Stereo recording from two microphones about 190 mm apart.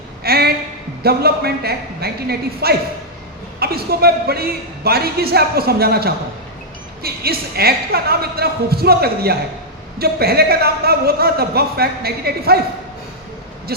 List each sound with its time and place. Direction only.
0.2 s a sound: 55° right (ahead or behind)
1.0 s a man's voice: 55° right (ahead or behind)
13.7 s owl: 55° right (ahead or behind)